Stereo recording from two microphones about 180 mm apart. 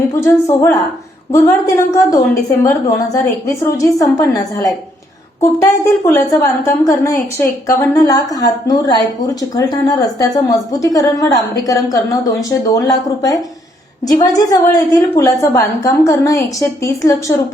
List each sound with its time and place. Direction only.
0.2 s a woman's voice: 15° left (ahead or behind)